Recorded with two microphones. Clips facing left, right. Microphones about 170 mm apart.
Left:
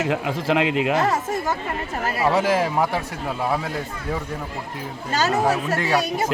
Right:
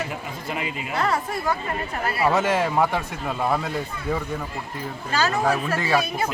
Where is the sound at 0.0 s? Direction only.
90° left.